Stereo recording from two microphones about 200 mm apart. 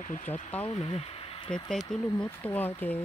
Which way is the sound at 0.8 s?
30° left (ahead or behind).